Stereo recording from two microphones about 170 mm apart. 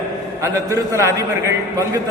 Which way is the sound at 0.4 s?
15° right (ahead or behind).